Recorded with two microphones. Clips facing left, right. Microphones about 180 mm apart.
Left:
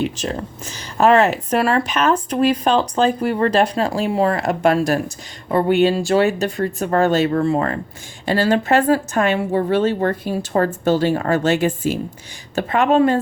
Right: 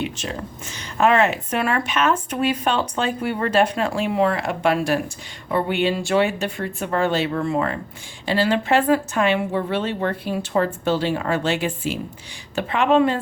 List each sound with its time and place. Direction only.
0.0 s a woman's voice: 40° left (ahead or behind)